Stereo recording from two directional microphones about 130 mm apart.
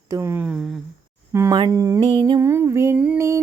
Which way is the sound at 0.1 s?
20° right (ahead or behind).